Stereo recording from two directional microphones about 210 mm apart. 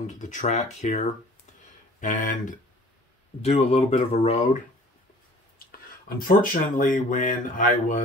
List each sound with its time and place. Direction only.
0.0 s speech: 35° left (ahead or behind)
6.0 s speech: 45° left (ahead or behind)